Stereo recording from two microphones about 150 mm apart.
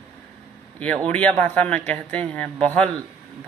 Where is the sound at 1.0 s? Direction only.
10° left (ahead or behind).